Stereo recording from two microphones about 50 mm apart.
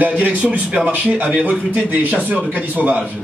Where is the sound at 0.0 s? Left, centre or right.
Right.